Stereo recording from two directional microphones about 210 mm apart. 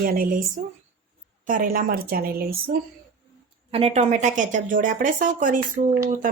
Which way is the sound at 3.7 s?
30° right (ahead or behind).